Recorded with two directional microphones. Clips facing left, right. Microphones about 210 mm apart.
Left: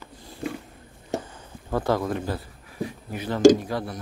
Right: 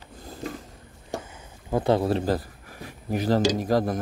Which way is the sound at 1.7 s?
20° right (ahead or behind).